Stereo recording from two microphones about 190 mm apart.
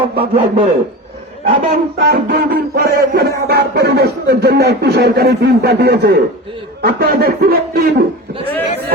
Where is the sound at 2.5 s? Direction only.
55° right (ahead or behind).